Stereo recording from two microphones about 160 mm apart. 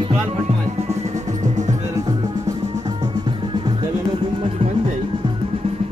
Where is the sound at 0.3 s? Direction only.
40° right (ahead or behind).